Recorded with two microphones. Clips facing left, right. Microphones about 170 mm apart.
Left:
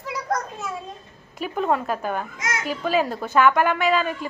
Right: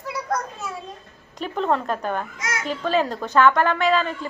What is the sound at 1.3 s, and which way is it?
A woman's voice, 10° left (ahead or behind).